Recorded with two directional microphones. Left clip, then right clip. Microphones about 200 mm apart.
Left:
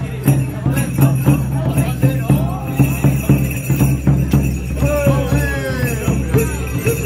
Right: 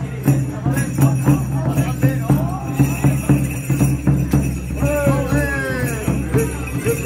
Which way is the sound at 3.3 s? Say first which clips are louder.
Left 1 dB; centre (ahead or behind).